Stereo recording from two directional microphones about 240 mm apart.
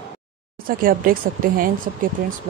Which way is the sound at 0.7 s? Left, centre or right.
Right.